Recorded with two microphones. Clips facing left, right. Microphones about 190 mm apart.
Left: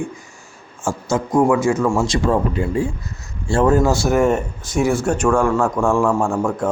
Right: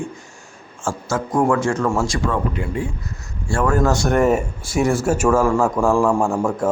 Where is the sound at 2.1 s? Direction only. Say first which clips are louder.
Left 4 dB; 30° left (ahead or behind).